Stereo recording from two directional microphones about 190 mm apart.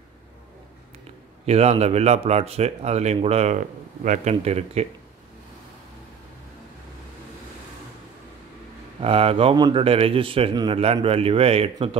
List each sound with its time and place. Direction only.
1.4 s speech: 35° right (ahead or behind)
9.0 s speech: 30° right (ahead or behind)